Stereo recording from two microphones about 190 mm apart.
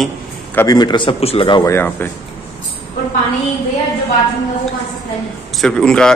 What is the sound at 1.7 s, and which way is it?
Speech, 10° left (ahead or behind).